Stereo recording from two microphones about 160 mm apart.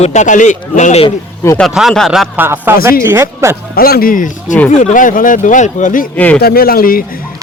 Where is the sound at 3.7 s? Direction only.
70° left (ahead or behind); by 6.0 s 50° left (ahead or behind).